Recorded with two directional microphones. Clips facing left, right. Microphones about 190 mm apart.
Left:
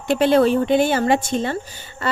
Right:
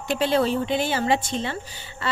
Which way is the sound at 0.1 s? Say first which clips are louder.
Left 6 dB; 55° left (ahead or behind).